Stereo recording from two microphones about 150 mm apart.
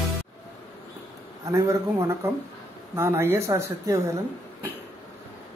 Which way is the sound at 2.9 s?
15° right (ahead or behind).